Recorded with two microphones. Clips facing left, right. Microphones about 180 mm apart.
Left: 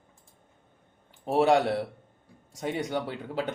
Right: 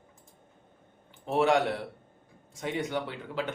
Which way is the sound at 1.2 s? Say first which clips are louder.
Left 2 dB; 35° left (ahead or behind).